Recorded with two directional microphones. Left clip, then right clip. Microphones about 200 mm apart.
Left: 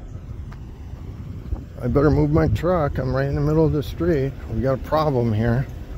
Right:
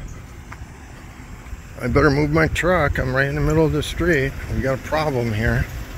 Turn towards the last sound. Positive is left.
turn(degrees=15)  # may be behind; listen again after turning